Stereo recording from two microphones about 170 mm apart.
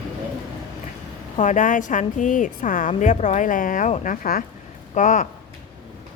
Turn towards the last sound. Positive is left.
turn(degrees=50)  # may be behind; listen again after turning